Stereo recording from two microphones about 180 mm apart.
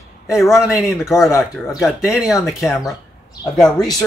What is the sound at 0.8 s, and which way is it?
Speech, 15° left (ahead or behind).